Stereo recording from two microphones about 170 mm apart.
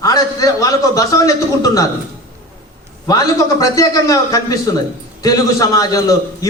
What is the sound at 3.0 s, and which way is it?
A man's voice, 20° left (ahead or behind).